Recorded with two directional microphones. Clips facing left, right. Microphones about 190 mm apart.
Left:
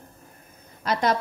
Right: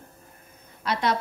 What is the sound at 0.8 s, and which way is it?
Speech, 45° left (ahead or behind).